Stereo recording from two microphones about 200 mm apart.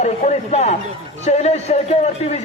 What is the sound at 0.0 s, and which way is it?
A man's voice, 35° left (ahead or behind).